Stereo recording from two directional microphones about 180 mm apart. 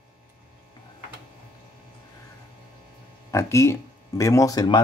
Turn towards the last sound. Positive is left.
turn(degrees=20)  # may be behind; listen again after turning